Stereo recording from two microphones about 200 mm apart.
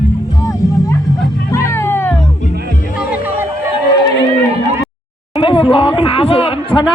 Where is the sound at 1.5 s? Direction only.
15° left (ahead or behind).